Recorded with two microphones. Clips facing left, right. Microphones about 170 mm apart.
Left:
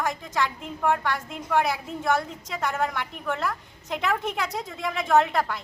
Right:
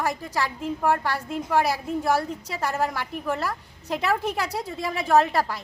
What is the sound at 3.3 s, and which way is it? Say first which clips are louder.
A woman's voice: left 1 dB; 35° right (ahead or behind).